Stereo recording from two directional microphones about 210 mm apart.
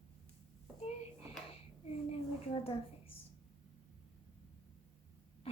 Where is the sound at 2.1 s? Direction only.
25° left (ahead or behind).